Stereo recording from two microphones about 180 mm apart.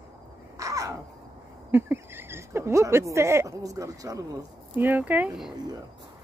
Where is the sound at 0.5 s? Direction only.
15° right (ahead or behind).